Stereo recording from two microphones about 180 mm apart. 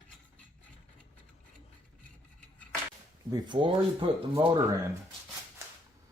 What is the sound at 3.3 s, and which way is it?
Speech, 25° right (ahead or behind).